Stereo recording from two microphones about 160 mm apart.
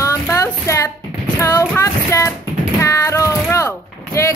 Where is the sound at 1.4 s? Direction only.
20° left (ahead or behind).